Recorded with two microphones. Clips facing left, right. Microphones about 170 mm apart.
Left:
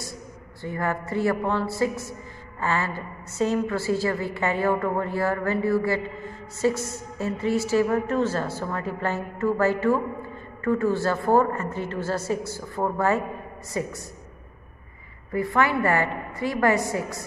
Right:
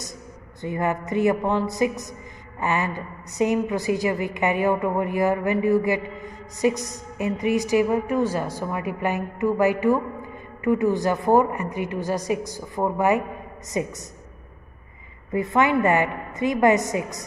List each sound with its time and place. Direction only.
0.6 s a woman's voice: 20° right (ahead or behind)
15.3 s a woman's voice: 20° right (ahead or behind)